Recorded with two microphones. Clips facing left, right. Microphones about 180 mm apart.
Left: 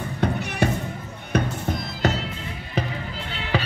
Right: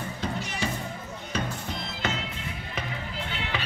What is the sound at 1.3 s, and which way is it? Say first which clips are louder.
Music: left 8 dB; 45° left (ahead or behind).